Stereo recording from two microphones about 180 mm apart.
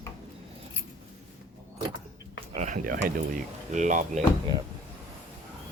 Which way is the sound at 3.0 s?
50° right (ahead or behind).